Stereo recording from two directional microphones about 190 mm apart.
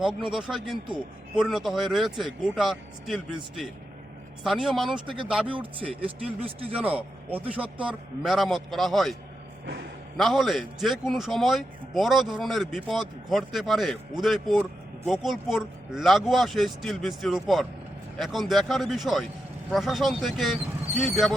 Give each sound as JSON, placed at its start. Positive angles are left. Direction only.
{"t": 0.0, "sound": "a man's voice", "side_deg": 0}
{"t": 4.4, "sound": "a man's voice", "side_deg": 0}
{"t": 5.5, "sound": "speech", "side_deg": -25}
{"t": 6.7, "sound": "a man's voice", "side_deg": -5}
{"t": 10.2, "sound": "a man's voice", "side_deg": 0}